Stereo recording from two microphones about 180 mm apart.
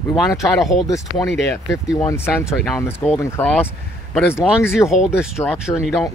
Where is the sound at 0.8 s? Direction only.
20° left (ahead or behind).